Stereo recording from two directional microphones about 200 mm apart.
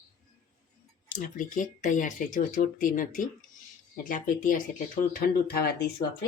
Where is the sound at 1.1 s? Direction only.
40° left (ahead or behind).